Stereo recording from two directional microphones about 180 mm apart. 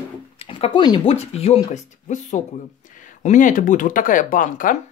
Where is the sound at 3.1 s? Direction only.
45° left (ahead or behind).